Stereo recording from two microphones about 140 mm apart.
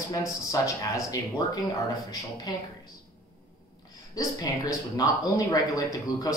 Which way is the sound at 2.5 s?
30° left (ahead or behind).